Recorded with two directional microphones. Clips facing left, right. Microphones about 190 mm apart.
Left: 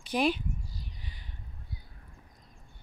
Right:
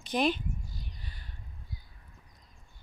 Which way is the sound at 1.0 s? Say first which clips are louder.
Left 1 dB; 15° left (ahead or behind).